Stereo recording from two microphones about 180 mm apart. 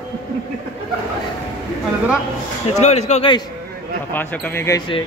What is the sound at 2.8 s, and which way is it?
Speech, 40° left (ahead or behind).